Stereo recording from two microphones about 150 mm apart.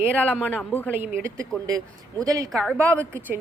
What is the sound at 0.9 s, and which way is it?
A woman's voice, 15° right (ahead or behind).